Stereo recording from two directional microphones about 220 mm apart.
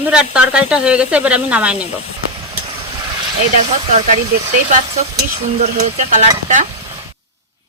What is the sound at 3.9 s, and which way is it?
Speech, 30° right (ahead or behind).